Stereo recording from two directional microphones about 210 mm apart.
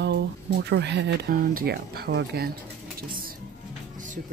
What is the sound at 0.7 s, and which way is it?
Speech, 55° right (ahead or behind).